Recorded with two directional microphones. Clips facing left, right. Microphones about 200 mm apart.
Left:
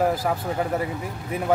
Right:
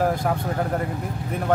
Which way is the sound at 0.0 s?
5° left (ahead or behind).